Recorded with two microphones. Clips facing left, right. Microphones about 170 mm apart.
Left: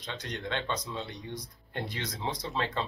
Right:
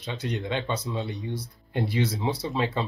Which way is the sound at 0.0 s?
10° right (ahead or behind).